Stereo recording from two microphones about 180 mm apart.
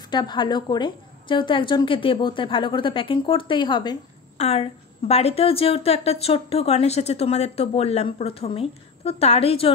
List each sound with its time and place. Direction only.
0.1 s a woman's voice: 25° left (ahead or behind)
4.4 s a woman's voice: 35° left (ahead or behind)